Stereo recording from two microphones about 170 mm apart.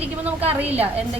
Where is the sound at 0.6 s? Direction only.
10° right (ahead or behind).